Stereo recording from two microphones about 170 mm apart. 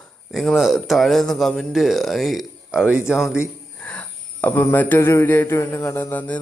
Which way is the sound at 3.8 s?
10° left (ahead or behind).